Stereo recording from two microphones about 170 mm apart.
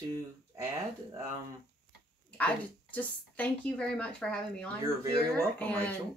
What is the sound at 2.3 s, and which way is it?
A woman's voice, 10° left (ahead or behind).